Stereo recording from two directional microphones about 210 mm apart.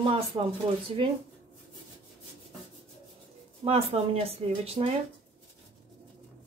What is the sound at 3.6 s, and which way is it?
Speech, 30° right (ahead or behind).